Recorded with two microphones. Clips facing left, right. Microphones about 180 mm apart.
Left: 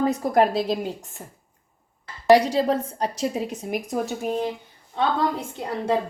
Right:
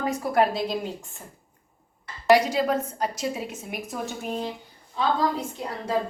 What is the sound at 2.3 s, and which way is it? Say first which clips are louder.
A woman's voice: left 3 dB; 30° left (ahead or behind).